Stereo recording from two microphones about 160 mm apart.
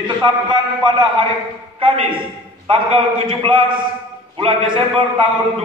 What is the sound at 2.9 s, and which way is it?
A man's voice, 35° right (ahead or behind).